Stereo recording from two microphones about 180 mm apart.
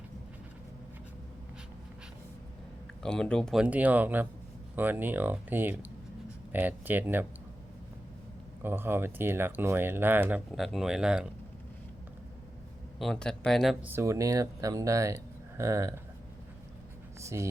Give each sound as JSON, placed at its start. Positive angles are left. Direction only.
{"t": 3.0, "sound": "speech", "side_deg": 5}
{"t": 8.6, "sound": "speech", "side_deg": -10}
{"t": 13.0, "sound": "speech", "side_deg": 5}
{"t": 13.9, "sound": "speech", "side_deg": -15}
{"t": 17.2, "sound": "speech", "side_deg": -15}